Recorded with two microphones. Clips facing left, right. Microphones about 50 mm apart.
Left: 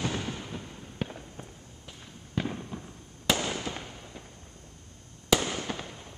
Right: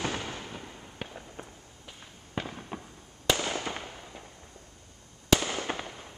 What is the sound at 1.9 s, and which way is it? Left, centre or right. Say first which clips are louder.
Fireworks: left 1 dB; centre.